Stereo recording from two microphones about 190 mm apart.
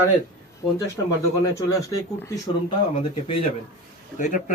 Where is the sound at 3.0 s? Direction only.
30° left (ahead or behind).